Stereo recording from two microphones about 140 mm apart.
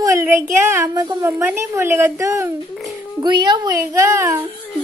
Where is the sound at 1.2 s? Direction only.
20° right (ahead or behind).